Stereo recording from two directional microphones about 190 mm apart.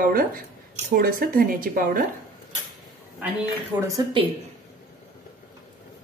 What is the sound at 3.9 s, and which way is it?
Speech, 25° right (ahead or behind).